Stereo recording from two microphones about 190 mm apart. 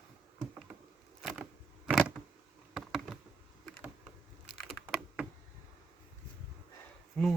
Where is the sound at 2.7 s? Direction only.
Centre (ahead or behind).